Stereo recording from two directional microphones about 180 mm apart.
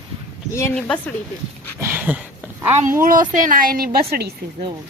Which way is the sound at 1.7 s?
10° right (ahead or behind).